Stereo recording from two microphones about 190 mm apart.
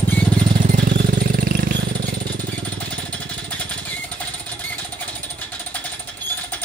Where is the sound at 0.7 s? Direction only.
45° right (ahead or behind).